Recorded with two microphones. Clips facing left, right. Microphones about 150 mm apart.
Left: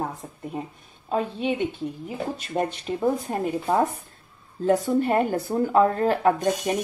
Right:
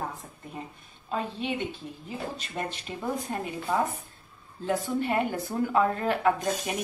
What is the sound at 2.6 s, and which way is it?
Speech, 40° left (ahead or behind).